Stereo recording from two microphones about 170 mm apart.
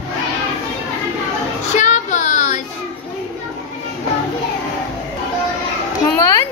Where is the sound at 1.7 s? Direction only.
45° left (ahead or behind).